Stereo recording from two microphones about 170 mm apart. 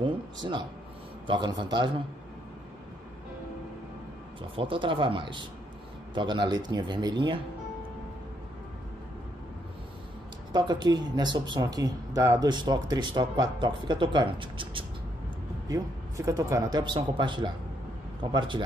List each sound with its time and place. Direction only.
0.0 s speech: 25° right (ahead or behind)
4.6 s speech: 30° right (ahead or behind)
10.5 s speech: 25° right (ahead or behind)
15.7 s speech: 20° right (ahead or behind)